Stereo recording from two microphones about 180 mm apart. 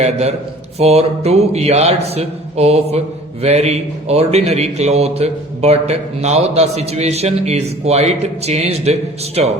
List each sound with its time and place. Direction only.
0.0 s a man's voice: 35° right (ahead or behind)